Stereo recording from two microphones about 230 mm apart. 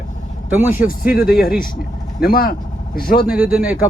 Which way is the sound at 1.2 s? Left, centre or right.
Left.